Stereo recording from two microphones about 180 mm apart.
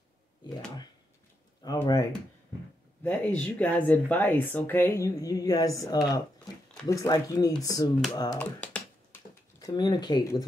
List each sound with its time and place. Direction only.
1.8 s speech: 15° left (ahead or behind)
8.4 s computer keyboard: 5° left (ahead or behind)
9.6 s speech: 20° left (ahead or behind)